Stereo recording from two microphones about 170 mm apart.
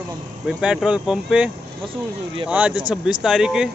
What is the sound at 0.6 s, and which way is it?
Speech, 5° right (ahead or behind).